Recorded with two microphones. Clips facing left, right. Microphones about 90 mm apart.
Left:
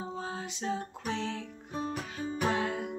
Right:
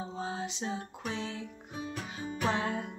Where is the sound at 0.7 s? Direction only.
15° right (ahead or behind).